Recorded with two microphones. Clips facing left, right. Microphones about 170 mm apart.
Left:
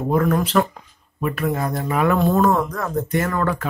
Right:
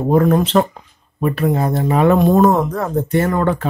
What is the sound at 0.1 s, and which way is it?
Speech, 25° right (ahead or behind).